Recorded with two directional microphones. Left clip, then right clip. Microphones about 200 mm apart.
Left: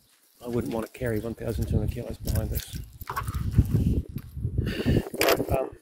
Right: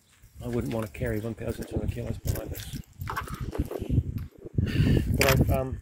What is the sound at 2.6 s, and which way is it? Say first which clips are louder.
Dog: left 1 dB; 55° left (ahead or behind).